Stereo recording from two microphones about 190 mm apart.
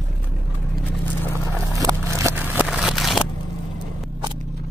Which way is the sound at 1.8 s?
15° right (ahead or behind).